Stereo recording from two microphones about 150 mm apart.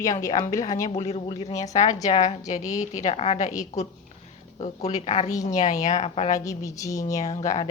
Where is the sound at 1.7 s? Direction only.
50° left (ahead or behind).